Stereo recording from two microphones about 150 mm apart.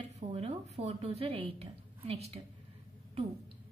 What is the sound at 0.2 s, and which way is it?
Speech, 45° right (ahead or behind).